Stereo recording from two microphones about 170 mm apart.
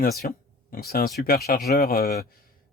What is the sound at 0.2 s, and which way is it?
A man's voice, 60° left (ahead or behind).